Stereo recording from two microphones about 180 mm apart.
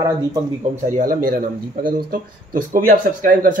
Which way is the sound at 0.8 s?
45° right (ahead or behind).